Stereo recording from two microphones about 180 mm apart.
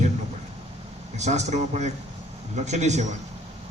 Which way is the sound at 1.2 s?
40° right (ahead or behind).